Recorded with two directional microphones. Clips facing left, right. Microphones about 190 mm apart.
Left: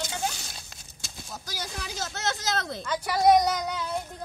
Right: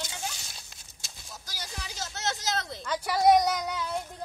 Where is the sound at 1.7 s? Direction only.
90° left.